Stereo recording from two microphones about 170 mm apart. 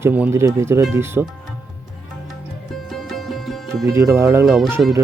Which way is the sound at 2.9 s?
Centre (ahead or behind).